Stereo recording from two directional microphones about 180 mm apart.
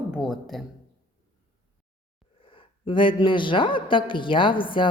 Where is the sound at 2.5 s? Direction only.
30° left (ahead or behind).